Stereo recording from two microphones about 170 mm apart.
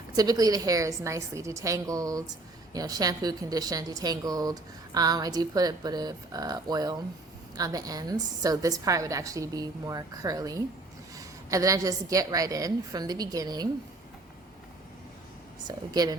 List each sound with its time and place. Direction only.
0.2 s a woman's voice: 20° right (ahead or behind)
15.6 s a woman's voice: 25° right (ahead or behind)